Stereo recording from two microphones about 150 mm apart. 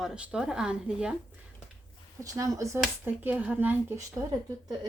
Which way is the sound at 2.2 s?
20° right (ahead or behind).